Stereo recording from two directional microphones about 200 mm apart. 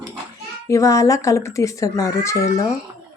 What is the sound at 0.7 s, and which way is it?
Speech, 15° left (ahead or behind).